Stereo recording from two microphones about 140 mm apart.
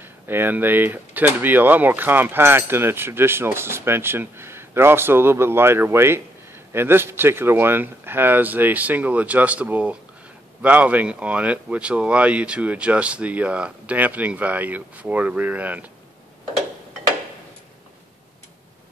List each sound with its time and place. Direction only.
0.0 s speech: 15° right (ahead or behind)